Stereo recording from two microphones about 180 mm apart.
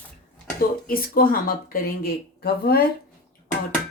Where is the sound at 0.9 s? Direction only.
55° left (ahead or behind).